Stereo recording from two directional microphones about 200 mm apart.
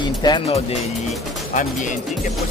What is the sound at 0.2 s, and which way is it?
Speech, 20° left (ahead or behind).